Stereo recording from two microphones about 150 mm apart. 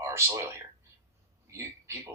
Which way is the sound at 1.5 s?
20° right (ahead or behind).